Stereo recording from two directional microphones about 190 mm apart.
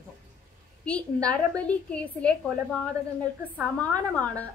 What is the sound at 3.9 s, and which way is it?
Speech, 10° left (ahead or behind).